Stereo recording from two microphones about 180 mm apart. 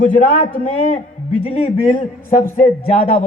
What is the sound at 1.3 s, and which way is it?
Speech, 30° left (ahead or behind).